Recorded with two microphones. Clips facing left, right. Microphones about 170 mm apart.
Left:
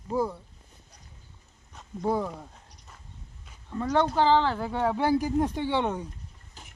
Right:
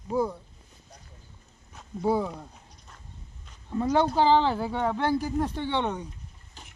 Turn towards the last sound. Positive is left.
turn(degrees=10)  # may be behind; listen again after turning